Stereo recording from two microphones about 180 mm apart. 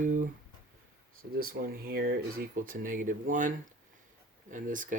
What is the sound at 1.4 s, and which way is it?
Speech, 55° right (ahead or behind).